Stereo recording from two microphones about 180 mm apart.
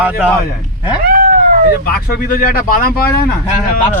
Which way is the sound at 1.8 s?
55° left (ahead or behind).